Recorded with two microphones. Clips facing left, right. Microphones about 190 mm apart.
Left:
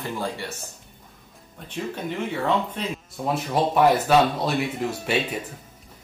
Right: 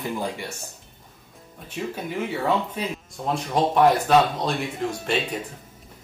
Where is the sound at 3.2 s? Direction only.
5° left (ahead or behind).